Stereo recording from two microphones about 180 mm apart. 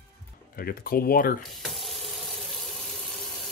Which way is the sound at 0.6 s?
55° left (ahead or behind).